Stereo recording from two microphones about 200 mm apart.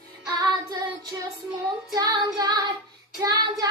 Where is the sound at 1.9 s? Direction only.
20° right (ahead or behind).